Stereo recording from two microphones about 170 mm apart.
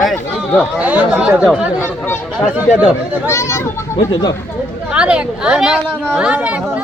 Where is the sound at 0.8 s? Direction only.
10° right (ahead or behind).